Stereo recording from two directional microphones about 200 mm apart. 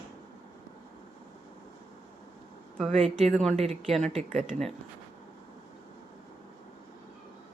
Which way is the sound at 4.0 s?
35° right (ahead or behind).